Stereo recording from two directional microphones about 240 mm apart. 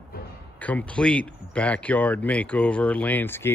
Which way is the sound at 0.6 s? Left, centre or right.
Centre.